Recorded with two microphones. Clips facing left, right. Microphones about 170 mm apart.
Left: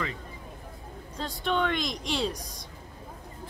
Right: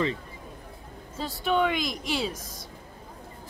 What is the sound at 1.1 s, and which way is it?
A woman's voice, 5° right (ahead or behind).